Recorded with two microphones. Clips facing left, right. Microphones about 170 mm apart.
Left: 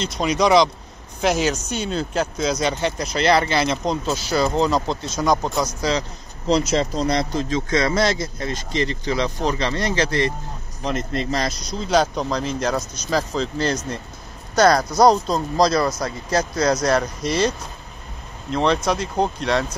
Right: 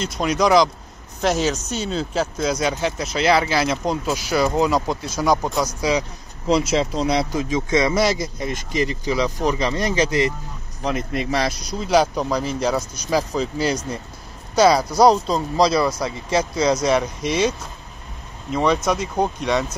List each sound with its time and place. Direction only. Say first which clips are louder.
0.0 s speech: even; 5° right (ahead or behind)